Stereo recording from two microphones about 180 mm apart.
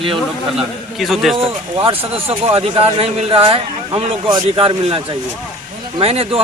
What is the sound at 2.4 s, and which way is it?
A man's voice, 35° right (ahead or behind).